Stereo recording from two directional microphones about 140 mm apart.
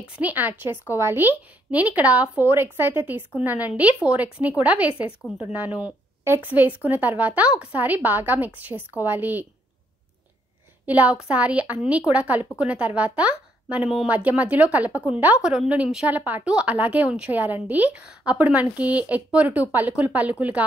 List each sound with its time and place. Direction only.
0.2 s speech: 15° right (ahead or behind)
8.7 s a woman's voice: 10° left (ahead or behind)
9.0 s speech: 15° right (ahead or behind)
10.9 s speech: 10° right (ahead or behind)